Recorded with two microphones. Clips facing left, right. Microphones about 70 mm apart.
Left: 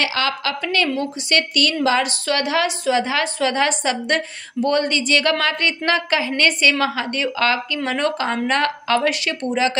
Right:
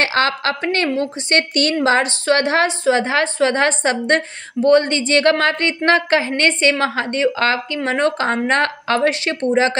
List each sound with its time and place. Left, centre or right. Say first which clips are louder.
0.0 s a woman's voice: right 4 dB; right